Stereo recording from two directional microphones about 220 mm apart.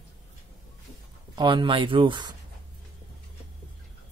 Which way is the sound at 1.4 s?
20° right (ahead or behind).